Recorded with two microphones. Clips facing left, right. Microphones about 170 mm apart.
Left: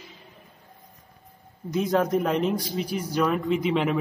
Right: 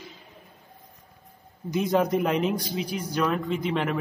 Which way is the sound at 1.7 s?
Centre (ahead or behind).